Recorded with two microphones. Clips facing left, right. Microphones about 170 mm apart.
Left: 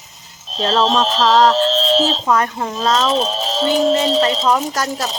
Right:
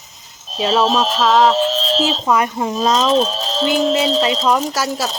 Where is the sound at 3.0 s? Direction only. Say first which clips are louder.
Right 2 dB; centre (ahead or behind).